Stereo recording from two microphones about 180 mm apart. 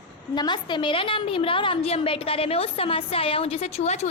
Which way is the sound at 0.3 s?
25° left (ahead or behind).